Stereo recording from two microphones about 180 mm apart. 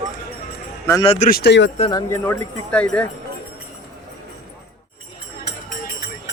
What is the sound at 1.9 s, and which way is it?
A man's voice, 15° left (ahead or behind).